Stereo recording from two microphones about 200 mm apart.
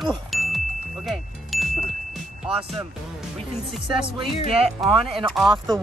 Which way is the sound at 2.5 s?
30° right (ahead or behind).